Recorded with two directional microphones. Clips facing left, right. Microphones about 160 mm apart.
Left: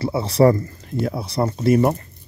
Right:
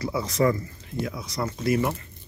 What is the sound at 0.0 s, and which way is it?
Speech, 30° left (ahead or behind).